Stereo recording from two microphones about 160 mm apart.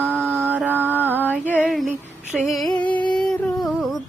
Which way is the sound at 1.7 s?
Centre (ahead or behind).